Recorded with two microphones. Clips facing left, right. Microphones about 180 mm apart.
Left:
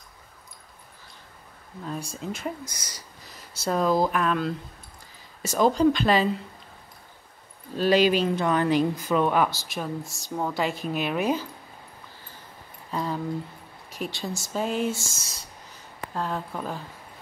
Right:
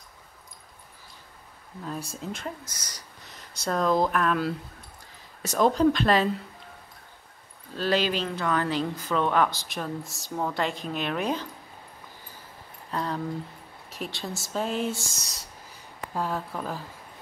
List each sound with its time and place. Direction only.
1.9 s speech: centre (ahead or behind)
2.4 s speech: 10° left (ahead or behind)
7.7 s speech: 15° left (ahead or behind)
12.9 s speech: 5° left (ahead or behind)